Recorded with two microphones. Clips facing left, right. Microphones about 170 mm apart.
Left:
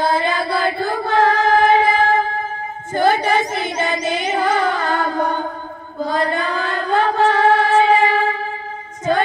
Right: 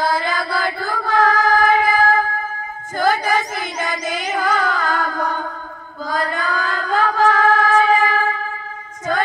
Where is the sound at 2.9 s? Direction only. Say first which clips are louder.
Left 2 dB; 25° left (ahead or behind).